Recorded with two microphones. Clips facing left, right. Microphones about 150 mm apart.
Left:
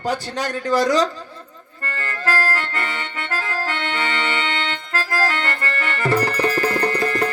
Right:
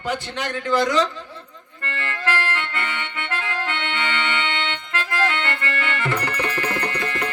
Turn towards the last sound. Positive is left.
turn(degrees=40)  # may be behind; listen again after turning